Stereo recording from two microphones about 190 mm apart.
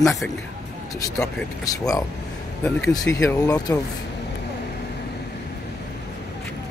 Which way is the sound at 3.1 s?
15° left (ahead or behind).